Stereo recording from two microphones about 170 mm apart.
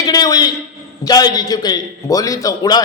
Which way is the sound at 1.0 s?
20° left (ahead or behind).